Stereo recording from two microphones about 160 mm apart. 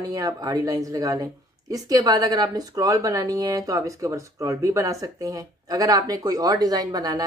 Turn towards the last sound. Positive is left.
turn(degrees=-25)  # may be behind; listen again after turning